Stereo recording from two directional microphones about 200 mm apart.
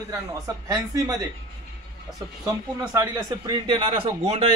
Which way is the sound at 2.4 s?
15° right (ahead or behind).